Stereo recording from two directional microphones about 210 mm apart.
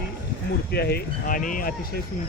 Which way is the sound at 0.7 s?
50° left (ahead or behind).